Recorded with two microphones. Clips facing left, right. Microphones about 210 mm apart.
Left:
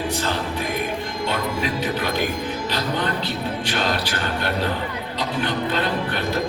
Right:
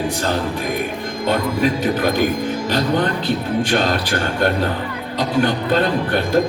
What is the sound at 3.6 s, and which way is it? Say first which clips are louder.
Music: right 4 dB; 50° right (ahead or behind).